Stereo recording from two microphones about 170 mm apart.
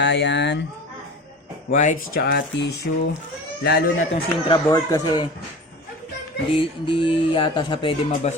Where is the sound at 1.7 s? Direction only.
45° left (ahead or behind); by 3.8 s 80° left.